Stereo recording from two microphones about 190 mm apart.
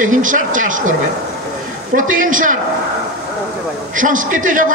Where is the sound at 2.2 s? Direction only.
45° right (ahead or behind).